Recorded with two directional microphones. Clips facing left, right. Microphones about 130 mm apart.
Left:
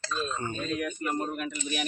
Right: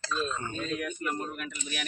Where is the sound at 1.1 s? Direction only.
30° left (ahead or behind).